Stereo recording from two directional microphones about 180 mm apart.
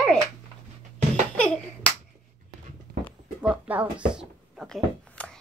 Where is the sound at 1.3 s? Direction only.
5° left (ahead or behind).